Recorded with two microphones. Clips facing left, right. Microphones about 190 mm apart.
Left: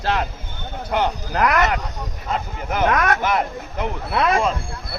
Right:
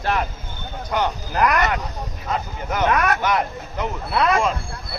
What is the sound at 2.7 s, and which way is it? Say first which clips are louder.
Speech: left 1 dB; 45° left (ahead or behind).